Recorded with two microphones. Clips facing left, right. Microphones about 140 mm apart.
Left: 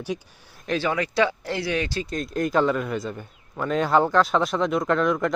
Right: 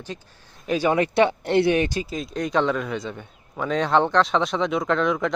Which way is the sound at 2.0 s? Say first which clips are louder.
Left 2 dB; centre (ahead or behind).